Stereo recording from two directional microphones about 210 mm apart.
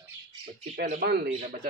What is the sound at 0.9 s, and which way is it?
Speech, 50° right (ahead or behind).